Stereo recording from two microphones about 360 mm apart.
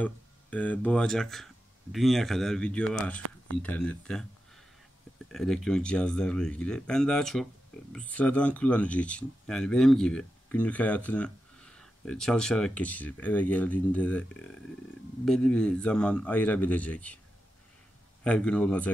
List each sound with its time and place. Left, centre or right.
0.0 s speech: centre
3.2 s a sound: right
3.6 s speech: centre
18.2 s speech: centre